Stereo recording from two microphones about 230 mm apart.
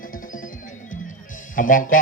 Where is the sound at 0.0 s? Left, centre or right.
Left.